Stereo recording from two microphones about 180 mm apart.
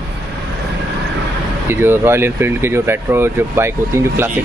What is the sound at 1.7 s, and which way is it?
Speech, 15° right (ahead or behind).